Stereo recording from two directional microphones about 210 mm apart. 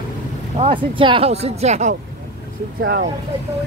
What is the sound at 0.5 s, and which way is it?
Speech, 25° right (ahead or behind).